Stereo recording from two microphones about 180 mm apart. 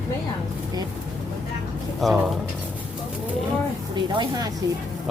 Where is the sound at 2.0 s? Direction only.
Centre (ahead or behind).